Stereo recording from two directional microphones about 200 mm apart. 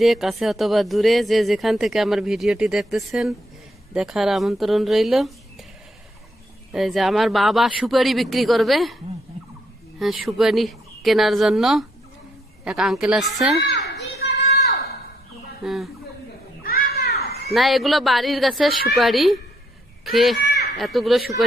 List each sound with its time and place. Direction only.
0.0 s speech: centre (ahead or behind)
6.7 s speech: centre (ahead or behind)
10.0 s speech: centre (ahead or behind)
13.7 s children playing: 65° left (ahead or behind)
15.6 s speech: centre (ahead or behind)
16.6 s children playing: 50° left (ahead or behind)
17.5 s speech: centre (ahead or behind)